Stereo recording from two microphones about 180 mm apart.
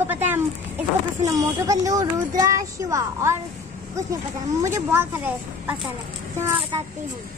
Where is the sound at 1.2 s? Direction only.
20° right (ahead or behind).